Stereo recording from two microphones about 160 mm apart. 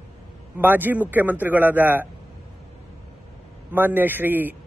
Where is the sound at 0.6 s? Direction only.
10° right (ahead or behind).